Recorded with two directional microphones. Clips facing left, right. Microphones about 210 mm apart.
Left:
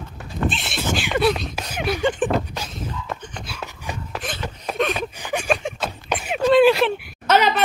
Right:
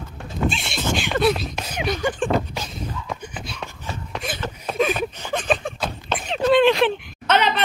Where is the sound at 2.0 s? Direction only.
20° left (ahead or behind).